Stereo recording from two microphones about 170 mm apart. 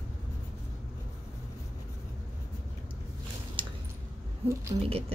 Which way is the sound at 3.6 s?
30° right (ahead or behind).